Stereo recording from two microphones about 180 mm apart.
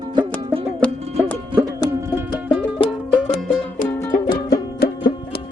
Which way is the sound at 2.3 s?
20° left (ahead or behind).